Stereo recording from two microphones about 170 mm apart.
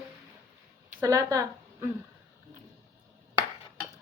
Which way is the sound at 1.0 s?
20° right (ahead or behind).